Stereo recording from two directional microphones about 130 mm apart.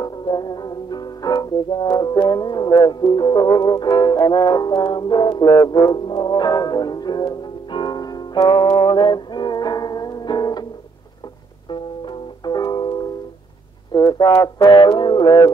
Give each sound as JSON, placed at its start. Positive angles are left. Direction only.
{"t": 0.0, "sound": "music", "side_deg": 35}
{"t": 11.7, "sound": "music", "side_deg": 40}